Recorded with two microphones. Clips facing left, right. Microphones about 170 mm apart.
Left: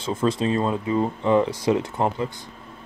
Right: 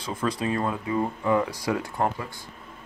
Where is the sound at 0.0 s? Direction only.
25° left (ahead or behind).